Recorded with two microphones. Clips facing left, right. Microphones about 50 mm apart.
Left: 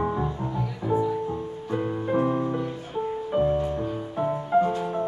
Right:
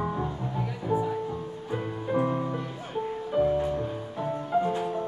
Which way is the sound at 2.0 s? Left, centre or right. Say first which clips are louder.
Left 2 dB; centre.